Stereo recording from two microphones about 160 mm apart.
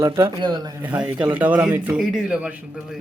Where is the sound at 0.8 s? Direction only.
10° right (ahead or behind).